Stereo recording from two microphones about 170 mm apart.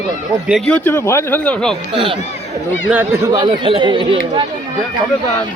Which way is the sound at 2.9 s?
10° right (ahead or behind).